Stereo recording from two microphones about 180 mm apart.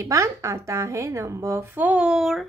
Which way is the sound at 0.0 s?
15° right (ahead or behind).